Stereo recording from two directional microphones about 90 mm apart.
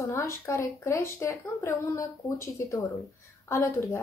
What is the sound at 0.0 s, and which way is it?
A woman's voice, 30° left (ahead or behind).